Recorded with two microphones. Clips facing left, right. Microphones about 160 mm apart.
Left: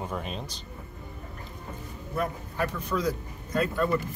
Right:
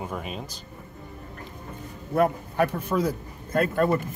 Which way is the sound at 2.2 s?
55° right (ahead or behind).